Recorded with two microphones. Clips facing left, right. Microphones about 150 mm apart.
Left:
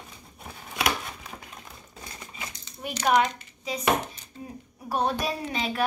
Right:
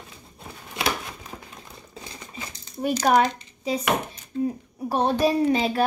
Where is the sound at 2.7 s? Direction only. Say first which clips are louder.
Right 4 dB; 40° right (ahead or behind).